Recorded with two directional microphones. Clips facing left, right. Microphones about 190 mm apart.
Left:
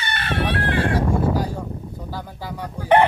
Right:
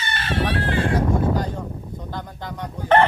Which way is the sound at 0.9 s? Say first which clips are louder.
Even; 10° left (ahead or behind).